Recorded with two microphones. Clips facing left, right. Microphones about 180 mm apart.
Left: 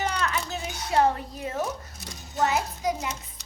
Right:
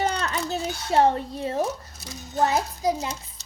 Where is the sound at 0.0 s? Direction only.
35° right (ahead or behind).